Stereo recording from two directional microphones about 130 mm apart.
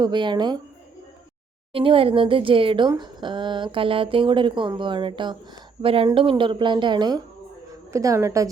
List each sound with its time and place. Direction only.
0.0 s speech: 35° right (ahead or behind)
1.7 s a woman's voice: 45° right (ahead or behind)
7.9 s a woman's voice: 25° right (ahead or behind)